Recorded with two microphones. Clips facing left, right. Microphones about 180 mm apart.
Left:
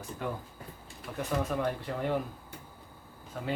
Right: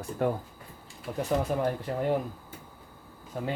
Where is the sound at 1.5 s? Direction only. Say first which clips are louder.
Right 3 dB; 15° right (ahead or behind).